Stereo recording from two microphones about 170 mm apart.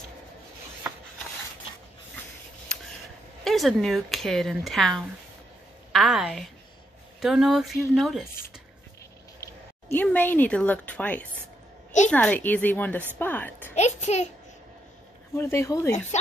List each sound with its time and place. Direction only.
2.7 s a sound: 5° left (ahead or behind)
3.4 s a woman's voice: centre (ahead or behind)
9.4 s a sound: 15° left (ahead or behind)
10.0 s a woman's voice: 10° left (ahead or behind)
13.7 s a child's voice: 40° left (ahead or behind)
15.3 s speech: 15° left (ahead or behind)